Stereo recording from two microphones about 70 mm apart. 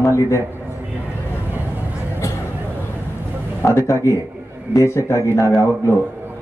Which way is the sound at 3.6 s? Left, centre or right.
Left.